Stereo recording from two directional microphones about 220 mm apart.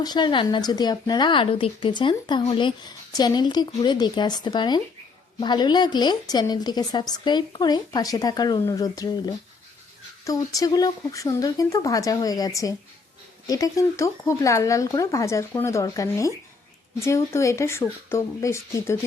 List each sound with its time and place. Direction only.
0.0 s speech: 20° left (ahead or behind)